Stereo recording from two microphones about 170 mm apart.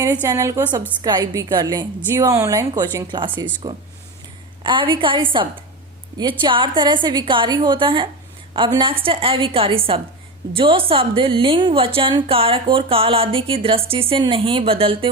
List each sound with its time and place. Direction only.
0.0 s a woman's voice: 20° right (ahead or behind)